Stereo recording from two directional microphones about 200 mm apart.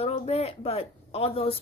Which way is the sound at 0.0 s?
30° left (ahead or behind).